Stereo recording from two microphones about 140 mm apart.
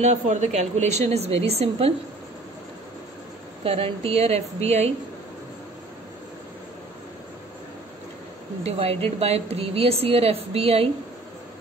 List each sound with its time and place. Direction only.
0.0 s a woman's voice: 55° right (ahead or behind)
3.6 s a woman's voice: 45° right (ahead or behind)
8.6 s a woman's voice: 45° right (ahead or behind)